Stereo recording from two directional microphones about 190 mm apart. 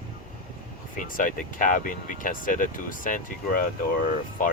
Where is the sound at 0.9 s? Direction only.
45° left (ahead or behind).